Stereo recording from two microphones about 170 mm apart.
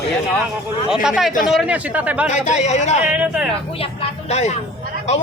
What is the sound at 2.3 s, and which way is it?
Speech, 45° left (ahead or behind).